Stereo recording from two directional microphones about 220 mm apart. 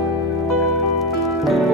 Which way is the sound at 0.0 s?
Centre (ahead or behind).